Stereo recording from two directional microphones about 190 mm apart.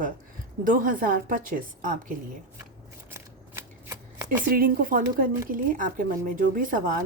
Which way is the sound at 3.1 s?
15° right (ahead or behind).